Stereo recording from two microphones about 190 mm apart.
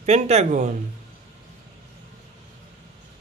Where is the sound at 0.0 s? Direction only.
35° right (ahead or behind).